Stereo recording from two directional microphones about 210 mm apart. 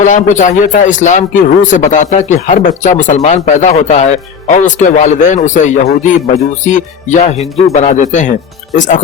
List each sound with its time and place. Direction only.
0.0 s speech: 35° left (ahead or behind)